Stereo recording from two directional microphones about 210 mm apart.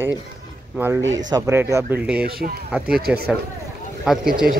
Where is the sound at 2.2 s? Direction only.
45° right (ahead or behind).